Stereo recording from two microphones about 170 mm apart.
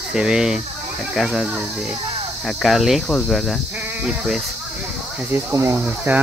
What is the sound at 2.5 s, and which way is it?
Speech, centre (ahead or behind).